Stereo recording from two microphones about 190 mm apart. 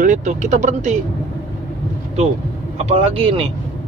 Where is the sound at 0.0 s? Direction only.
40° right (ahead or behind).